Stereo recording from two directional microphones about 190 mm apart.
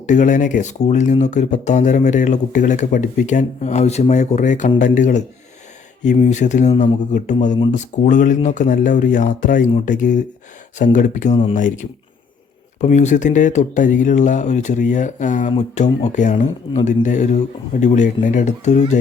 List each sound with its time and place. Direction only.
0.0 s speech: 40° left (ahead or behind)
12.8 s speech: 40° left (ahead or behind)